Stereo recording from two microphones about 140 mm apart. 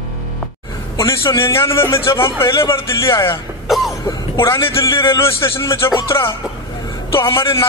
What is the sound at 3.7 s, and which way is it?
Cough, centre (ahead or behind).